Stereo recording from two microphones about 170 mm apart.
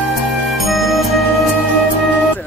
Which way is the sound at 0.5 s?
Centre (ahead or behind).